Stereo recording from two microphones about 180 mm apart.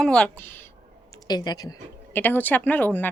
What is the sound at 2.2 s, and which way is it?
Speech, 10° left (ahead or behind).